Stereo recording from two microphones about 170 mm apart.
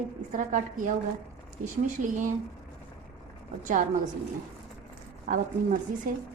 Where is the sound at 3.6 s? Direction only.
45° right (ahead or behind).